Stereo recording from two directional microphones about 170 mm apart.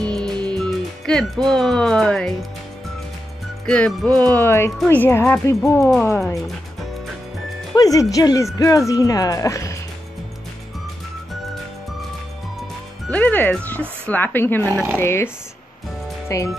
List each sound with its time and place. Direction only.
0.0 s music: 5° left (ahead or behind)
0.5 s speech: 5° left (ahead or behind)
3.6 s speech: 5° left (ahead or behind)
7.7 s speech: 20° left (ahead or behind)
13.1 s music: 10° left (ahead or behind)
14.7 s speech: 15° right (ahead or behind)
15.0 s speech: 15° left (ahead or behind)